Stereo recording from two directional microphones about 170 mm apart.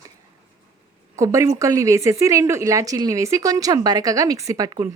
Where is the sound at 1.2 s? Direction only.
20° right (ahead or behind).